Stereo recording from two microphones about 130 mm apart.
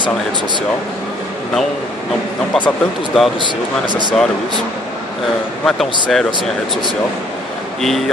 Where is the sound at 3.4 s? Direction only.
35° right (ahead or behind).